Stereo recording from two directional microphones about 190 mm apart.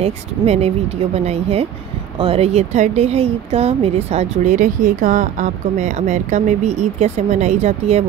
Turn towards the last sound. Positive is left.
turn(degrees=-35)  # may be behind; listen again after turning